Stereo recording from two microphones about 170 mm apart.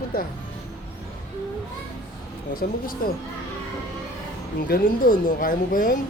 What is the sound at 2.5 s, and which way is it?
Speech, 60° left (ahead or behind).